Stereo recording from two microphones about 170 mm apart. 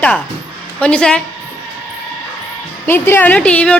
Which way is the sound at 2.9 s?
10° left (ahead or behind).